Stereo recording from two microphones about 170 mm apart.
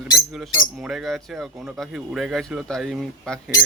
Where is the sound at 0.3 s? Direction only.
Centre (ahead or behind).